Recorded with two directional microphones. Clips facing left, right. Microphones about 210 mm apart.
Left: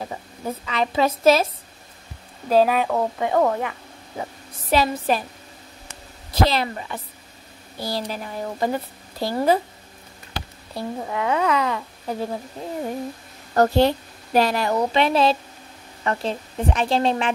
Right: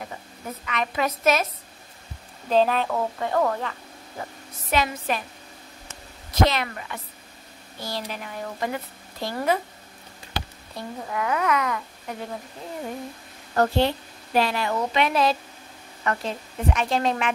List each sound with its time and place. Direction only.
0.0 s a woman's voice: 30° left (ahead or behind)
2.5 s speech: 10° left (ahead or behind)
4.6 s a woman's voice: 35° left (ahead or behind)
5.9 s a sound: 30° left (ahead or behind)
7.8 s a woman's voice: 35° left (ahead or behind)
10.7 s speech: 30° left (ahead or behind)
13.6 s a woman's voice: 40° left (ahead or behind)